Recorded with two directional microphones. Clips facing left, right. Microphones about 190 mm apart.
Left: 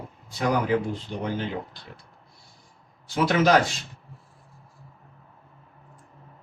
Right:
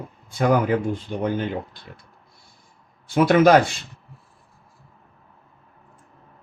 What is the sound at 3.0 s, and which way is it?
Speech, 55° right (ahead or behind).